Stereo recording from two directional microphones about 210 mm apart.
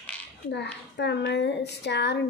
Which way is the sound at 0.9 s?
55° left (ahead or behind).